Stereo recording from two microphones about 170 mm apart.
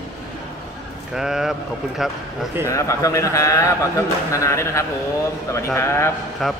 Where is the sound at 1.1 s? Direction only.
5° right (ahead or behind).